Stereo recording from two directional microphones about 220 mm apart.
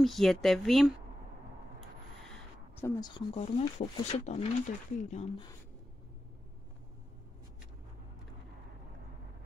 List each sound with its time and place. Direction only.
0.0 s speech: centre (ahead or behind)
2.2 s a sound: 10° left (ahead or behind)
3.3 s speech: 30° left (ahead or behind)